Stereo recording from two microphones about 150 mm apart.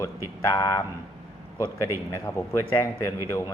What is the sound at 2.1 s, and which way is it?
Speech, 20° left (ahead or behind).